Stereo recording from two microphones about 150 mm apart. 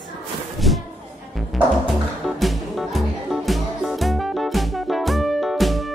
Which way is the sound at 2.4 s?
Centre (ahead or behind).